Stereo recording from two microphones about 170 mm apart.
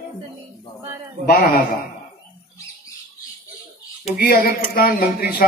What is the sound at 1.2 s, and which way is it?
Speech, 60° left (ahead or behind).